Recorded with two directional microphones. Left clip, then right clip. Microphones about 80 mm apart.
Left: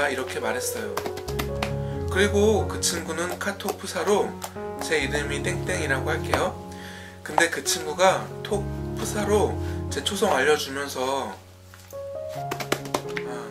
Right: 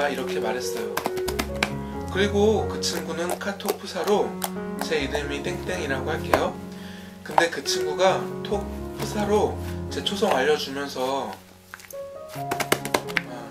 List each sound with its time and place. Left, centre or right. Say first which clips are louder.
0.0 s speech: even; left
0.9 s music: right 3 dB; centre
2.1 s speech: even; left